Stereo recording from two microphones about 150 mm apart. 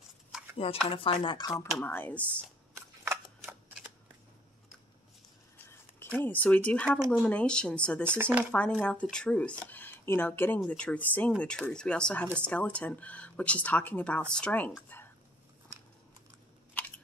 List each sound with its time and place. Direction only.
0.8 s speech: 35° left (ahead or behind)
1.9 s speech: 10° left (ahead or behind)
5.7 s speech: 15° left (ahead or behind)
8.2 s speech: 10° right (ahead or behind)
8.5 s speech: 10° left (ahead or behind)
14.9 s a sound: 15° left (ahead or behind)
16.8 s a sound: 10° left (ahead or behind)